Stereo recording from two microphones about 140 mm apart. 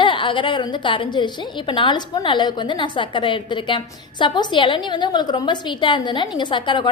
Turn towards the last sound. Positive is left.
turn(degrees=35)  # may be behind; listen again after turning